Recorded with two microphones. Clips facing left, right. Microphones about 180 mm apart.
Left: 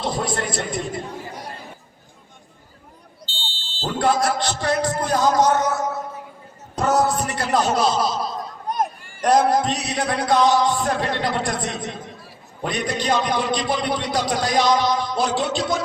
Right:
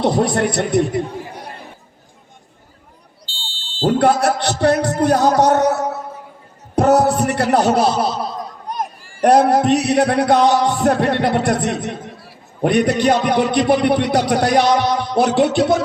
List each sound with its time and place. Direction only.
0.0 s a man's voice: 65° right (ahead or behind)
3.8 s a man's voice: 60° right (ahead or behind)